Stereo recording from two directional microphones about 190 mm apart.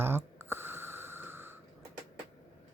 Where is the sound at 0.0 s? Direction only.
10° right (ahead or behind).